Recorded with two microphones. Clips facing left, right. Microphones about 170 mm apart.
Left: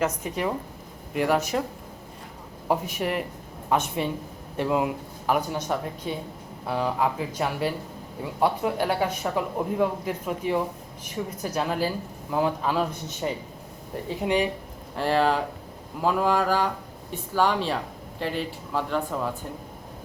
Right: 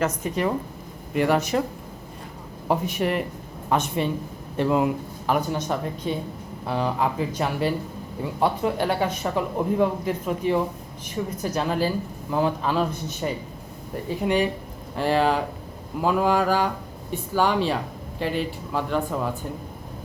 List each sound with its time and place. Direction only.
0.3 s speech: 10° left (ahead or behind)
2.6 s speech: 5° left (ahead or behind)
14.9 s speech: centre (ahead or behind)